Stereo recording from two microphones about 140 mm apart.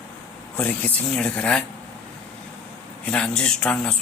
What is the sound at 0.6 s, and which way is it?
Speech, 10° left (ahead or behind).